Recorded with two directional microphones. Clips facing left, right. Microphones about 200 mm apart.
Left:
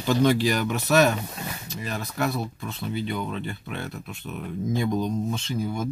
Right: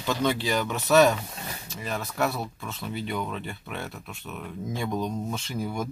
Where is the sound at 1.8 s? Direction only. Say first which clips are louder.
Even; centre (ahead or behind).